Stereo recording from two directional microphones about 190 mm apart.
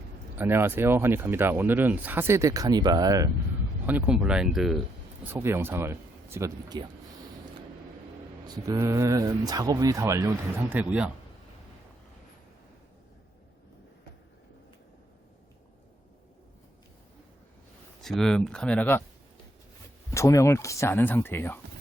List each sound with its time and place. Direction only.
0.3 s speech: 10° right (ahead or behind)
3.8 s speech: 5° right (ahead or behind)
5.3 s speech: 15° right (ahead or behind)
8.4 s speech: 15° right (ahead or behind)
18.0 s speech: centre (ahead or behind)
20.1 s speech: 15° left (ahead or behind)